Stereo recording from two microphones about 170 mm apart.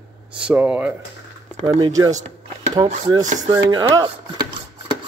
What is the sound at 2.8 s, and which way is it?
Speech, 25° right (ahead or behind).